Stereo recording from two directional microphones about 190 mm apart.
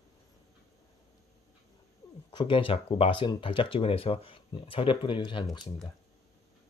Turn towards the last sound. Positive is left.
turn(degrees=20)  # may be behind; listen again after turning